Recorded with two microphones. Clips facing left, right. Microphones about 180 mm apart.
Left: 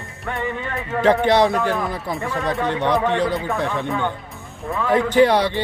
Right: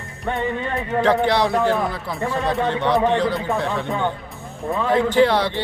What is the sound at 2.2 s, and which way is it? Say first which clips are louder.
Speech: right 3 dB; 20° right (ahead or behind).